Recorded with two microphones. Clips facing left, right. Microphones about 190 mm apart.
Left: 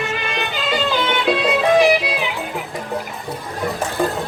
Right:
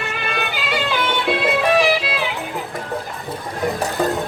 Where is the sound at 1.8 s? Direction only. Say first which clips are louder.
Left 3 dB; 20° left (ahead or behind).